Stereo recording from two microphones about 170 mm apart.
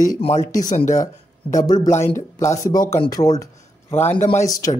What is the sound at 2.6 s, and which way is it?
Speech, 50° left (ahead or behind).